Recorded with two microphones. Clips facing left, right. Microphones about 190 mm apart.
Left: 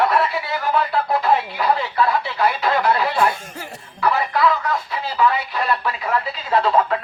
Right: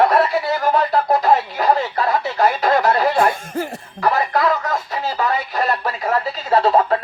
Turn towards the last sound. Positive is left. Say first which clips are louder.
# right 3 dB
turn(degrees=-40)  # may be behind; listen again after turning